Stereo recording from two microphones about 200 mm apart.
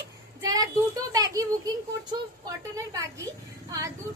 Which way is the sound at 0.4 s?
20° right (ahead or behind).